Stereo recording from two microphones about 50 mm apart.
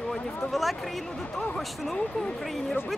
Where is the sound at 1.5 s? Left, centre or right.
Centre.